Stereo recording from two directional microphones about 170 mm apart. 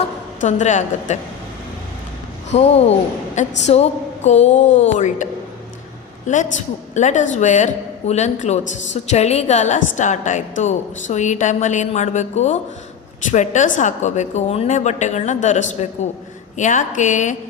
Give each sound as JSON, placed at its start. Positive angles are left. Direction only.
{"t": 0.4, "sound": "a woman's voice", "side_deg": 45}
{"t": 2.5, "sound": "a woman's voice", "side_deg": 40}